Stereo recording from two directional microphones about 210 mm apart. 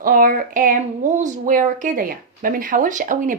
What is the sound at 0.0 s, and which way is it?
Speech, 40° right (ahead or behind).